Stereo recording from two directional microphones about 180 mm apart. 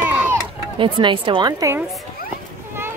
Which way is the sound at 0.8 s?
25° right (ahead or behind).